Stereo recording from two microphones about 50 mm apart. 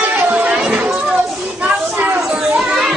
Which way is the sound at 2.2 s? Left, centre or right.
Centre.